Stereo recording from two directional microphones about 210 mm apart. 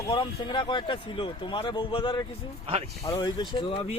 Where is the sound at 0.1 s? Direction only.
25° left (ahead or behind).